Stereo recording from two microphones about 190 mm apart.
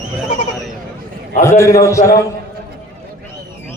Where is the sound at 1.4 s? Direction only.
15° left (ahead or behind).